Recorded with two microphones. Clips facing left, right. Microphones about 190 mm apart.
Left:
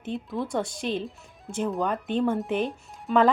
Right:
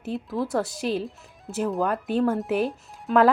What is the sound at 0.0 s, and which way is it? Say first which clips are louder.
Speech: right 2 dB; centre (ahead or behind).